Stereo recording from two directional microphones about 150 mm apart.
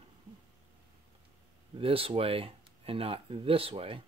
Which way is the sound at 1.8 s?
40° right (ahead or behind).